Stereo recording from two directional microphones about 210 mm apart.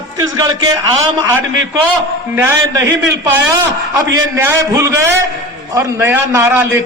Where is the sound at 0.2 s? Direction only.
15° right (ahead or behind).